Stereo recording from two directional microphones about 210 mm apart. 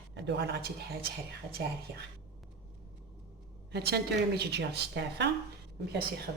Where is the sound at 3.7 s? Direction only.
50° right (ahead or behind).